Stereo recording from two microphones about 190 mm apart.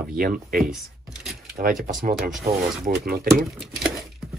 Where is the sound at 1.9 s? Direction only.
40° right (ahead or behind).